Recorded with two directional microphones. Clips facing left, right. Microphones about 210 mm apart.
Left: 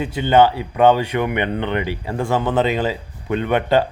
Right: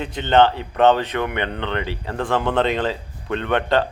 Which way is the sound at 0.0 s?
10° left (ahead or behind).